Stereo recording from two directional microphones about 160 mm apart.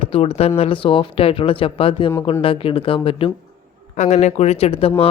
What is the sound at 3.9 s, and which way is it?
Speech, 50° left (ahead or behind).